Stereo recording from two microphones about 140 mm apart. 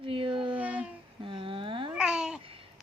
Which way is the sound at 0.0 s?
40° right (ahead or behind).